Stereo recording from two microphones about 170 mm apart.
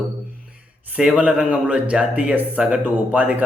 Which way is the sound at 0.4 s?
5° right (ahead or behind).